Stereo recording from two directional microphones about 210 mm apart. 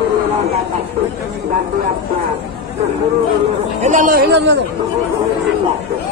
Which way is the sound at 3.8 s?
40° right (ahead or behind).